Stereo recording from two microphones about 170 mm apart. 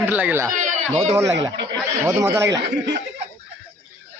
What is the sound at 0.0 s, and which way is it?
A man's voice, 10° right (ahead or behind).